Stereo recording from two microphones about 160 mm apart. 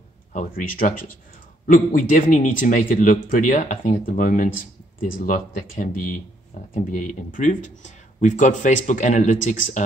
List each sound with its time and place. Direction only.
0.3 s speech: 55° left (ahead or behind)